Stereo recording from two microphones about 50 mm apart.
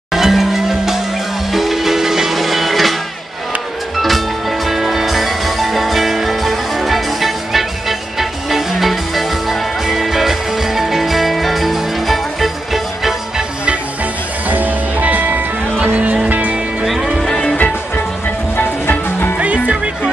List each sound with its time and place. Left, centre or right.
0.1 s music: centre
4.6 s music: centre
14.5 s music: right
15.8 s music: right
16.8 s music: centre
18.6 s music: left
19.4 s music: right